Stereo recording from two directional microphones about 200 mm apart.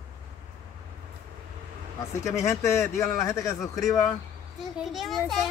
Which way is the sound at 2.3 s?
15° left (ahead or behind).